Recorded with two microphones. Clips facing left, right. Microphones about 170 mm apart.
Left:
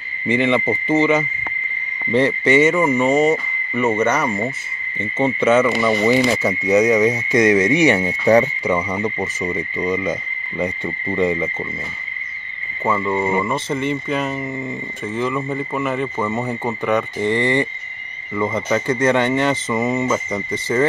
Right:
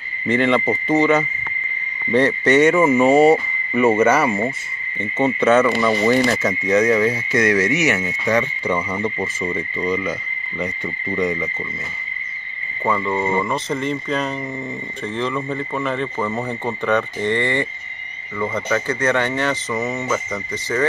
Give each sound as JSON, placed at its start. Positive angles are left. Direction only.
{"t": 0.3, "sound": "speech", "side_deg": 10}
{"t": 2.1, "sound": "speech", "side_deg": 10}
{"t": 3.7, "sound": "cricket", "side_deg": -10}
{"t": 5.4, "sound": "speech", "side_deg": 5}
{"t": 8.6, "sound": "speech", "side_deg": 10}
{"t": 12.8, "sound": "speech", "side_deg": 5}
{"t": 19.9, "sound": "speech", "side_deg": 15}